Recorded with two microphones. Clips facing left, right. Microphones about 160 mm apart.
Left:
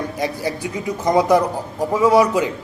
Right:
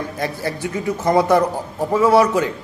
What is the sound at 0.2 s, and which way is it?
A man's voice, 15° left (ahead or behind).